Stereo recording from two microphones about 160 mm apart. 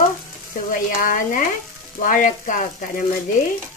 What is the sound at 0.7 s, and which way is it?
Frying, 60° left (ahead or behind).